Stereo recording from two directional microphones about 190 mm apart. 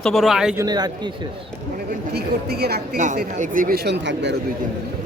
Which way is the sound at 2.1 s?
55° right (ahead or behind).